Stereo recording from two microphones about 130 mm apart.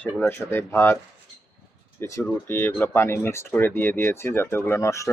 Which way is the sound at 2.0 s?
15° left (ahead or behind).